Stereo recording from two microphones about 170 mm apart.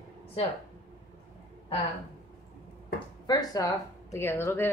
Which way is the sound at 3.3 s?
20° left (ahead or behind).